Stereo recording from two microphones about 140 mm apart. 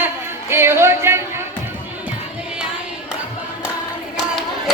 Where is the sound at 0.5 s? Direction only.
15° right (ahead or behind).